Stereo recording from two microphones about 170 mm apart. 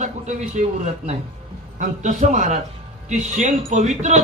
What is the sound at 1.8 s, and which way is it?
Speech, 45° right (ahead or behind).